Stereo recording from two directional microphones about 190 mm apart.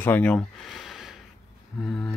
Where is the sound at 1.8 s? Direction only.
Centre (ahead or behind).